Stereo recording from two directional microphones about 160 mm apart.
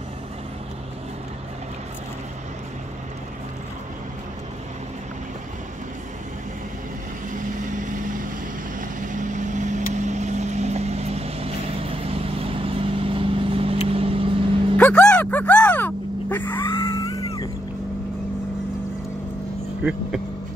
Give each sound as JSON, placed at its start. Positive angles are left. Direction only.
{"t": 7.3, "sound": "vehicle", "side_deg": -55}
{"t": 14.8, "sound": "a sound", "side_deg": 5}
{"t": 16.5, "sound": "music", "side_deg": 30}
{"t": 19.8, "sound": "vehicle", "side_deg": -5}